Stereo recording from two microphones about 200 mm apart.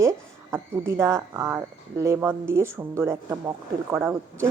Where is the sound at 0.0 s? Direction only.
15° right (ahead or behind).